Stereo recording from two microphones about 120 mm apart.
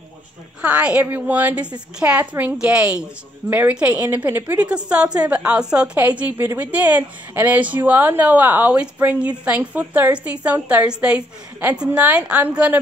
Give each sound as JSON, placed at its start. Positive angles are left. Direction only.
{"t": 0.6, "sound": "a woman's voice", "side_deg": -10}